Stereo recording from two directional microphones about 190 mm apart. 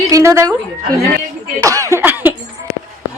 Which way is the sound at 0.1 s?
15° right (ahead or behind).